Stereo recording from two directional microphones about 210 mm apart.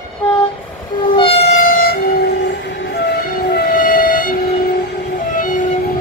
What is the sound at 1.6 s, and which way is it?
Train, 45° left (ahead or behind).